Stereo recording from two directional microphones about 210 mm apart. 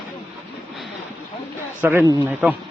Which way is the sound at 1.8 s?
10° right (ahead or behind).